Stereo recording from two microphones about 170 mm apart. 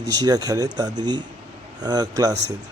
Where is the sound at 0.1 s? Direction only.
25° right (ahead or behind).